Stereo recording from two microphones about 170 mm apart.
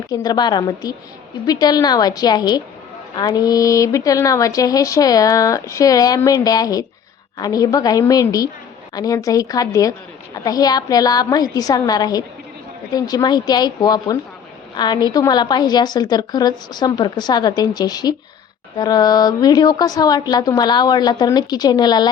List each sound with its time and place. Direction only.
0.1 s a woman's voice: 25° left (ahead or behind)